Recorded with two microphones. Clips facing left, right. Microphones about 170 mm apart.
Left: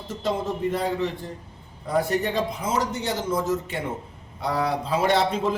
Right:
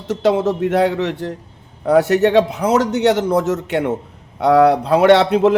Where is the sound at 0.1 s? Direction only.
75° right (ahead or behind).